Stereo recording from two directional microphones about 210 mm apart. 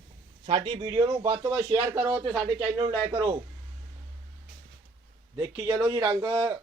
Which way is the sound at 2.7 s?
20° right (ahead or behind).